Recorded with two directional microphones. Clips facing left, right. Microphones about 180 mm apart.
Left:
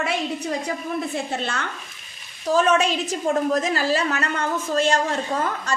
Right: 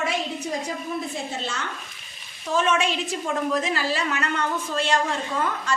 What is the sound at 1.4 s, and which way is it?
Speech, 60° left (ahead or behind).